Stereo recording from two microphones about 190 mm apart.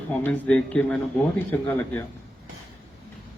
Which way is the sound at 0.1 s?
5° left (ahead or behind).